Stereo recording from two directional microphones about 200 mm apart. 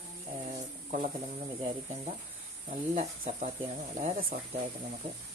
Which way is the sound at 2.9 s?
35° right (ahead or behind).